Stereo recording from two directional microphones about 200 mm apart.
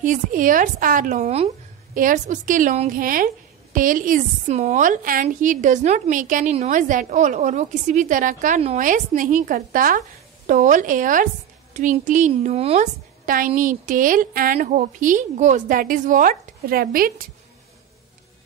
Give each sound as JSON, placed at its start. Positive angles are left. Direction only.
{"t": 0.0, "sound": "a woman's voice", "side_deg": -40}